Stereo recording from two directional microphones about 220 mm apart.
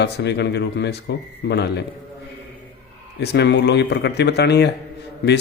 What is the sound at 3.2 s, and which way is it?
Speech, 50° left (ahead or behind).